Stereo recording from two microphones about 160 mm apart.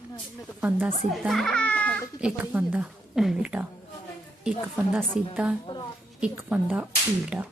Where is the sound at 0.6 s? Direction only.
10° right (ahead or behind).